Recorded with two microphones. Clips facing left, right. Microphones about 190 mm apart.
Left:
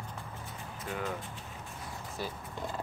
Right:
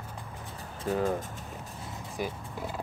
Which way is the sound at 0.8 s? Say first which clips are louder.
Right 9 dB; 30° right (ahead or behind).